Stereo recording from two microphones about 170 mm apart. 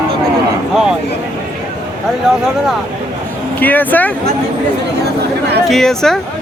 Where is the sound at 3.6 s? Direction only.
10° left (ahead or behind).